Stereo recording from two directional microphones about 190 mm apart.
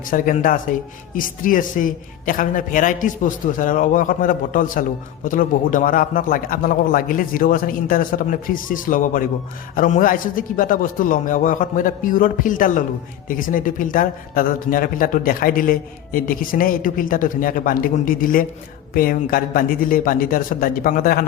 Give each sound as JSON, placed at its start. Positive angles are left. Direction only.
{"t": 0.0, "sound": "speech", "side_deg": 45}